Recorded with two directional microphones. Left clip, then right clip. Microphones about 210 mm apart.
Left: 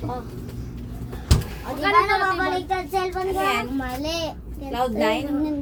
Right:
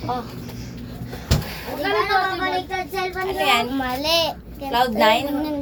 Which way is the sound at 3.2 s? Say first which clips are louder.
Right 3 dB; 15° left (ahead or behind).